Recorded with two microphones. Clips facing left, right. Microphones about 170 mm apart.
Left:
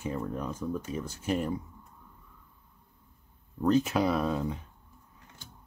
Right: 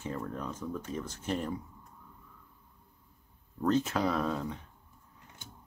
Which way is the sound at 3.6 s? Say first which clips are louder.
Left 3 dB; 10° left (ahead or behind).